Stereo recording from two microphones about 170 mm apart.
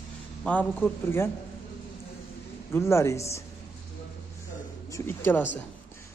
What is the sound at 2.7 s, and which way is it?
Speech, 15° left (ahead or behind).